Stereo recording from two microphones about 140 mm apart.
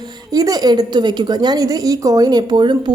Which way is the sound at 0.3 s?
25° right (ahead or behind).